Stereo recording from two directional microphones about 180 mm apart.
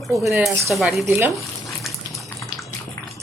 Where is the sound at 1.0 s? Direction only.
15° right (ahead or behind).